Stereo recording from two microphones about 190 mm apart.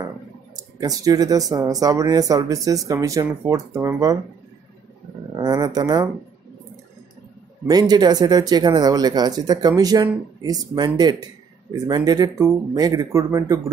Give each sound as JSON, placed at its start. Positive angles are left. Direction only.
{"t": 0.7, "sound": "speech", "side_deg": -20}
{"t": 5.3, "sound": "speech", "side_deg": -20}
{"t": 7.6, "sound": "speech", "side_deg": -20}